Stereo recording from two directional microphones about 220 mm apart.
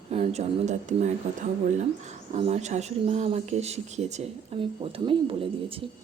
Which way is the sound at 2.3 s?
30° right (ahead or behind).